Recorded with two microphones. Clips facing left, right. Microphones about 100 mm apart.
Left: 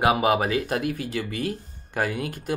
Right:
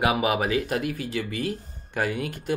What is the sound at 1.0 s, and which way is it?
Speech, 45° left (ahead or behind).